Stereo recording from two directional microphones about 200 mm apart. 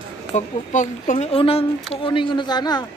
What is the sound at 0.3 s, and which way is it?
Speech, 40° left (ahead or behind).